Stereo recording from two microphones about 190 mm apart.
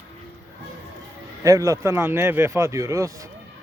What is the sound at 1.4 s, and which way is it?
Speech, 15° right (ahead or behind).